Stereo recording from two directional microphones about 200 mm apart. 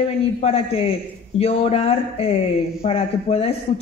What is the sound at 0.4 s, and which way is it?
A man's voice, 30° left (ahead or behind).